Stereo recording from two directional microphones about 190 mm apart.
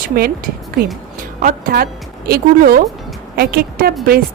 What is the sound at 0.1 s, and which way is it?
Speech, 50° right (ahead or behind).